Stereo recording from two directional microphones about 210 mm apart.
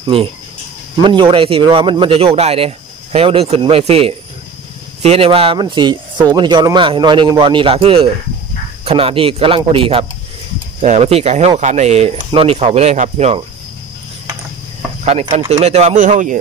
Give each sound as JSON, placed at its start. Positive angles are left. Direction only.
{"t": 0.0, "sound": "speech", "side_deg": -25}
{"t": 15.3, "sound": "speech", "side_deg": -30}